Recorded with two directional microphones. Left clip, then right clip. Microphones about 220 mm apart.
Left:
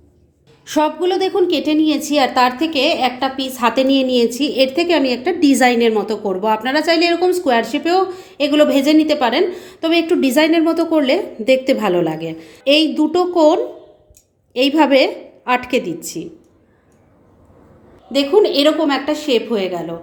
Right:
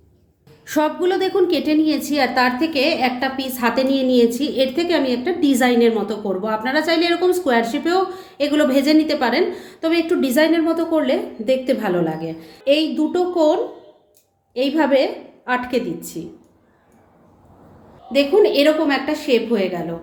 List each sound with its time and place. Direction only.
0.6 s a woman's voice: 15° left (ahead or behind)
18.1 s a woman's voice: 25° left (ahead or behind)